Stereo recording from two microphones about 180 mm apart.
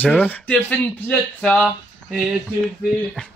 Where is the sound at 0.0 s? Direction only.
10° left (ahead or behind).